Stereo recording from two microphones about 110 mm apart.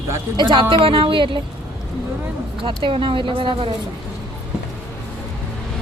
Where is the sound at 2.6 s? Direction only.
50° right (ahead or behind).